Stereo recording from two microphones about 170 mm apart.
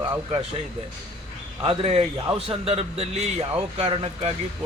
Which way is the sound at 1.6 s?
35° right (ahead or behind).